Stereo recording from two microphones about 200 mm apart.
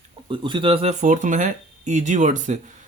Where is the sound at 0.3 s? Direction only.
25° right (ahead or behind).